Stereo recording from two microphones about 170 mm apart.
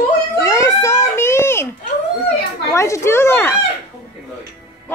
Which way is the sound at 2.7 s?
15° left (ahead or behind).